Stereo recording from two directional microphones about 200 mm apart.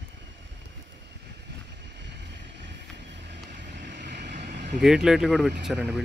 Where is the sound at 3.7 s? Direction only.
60° right (ahead or behind).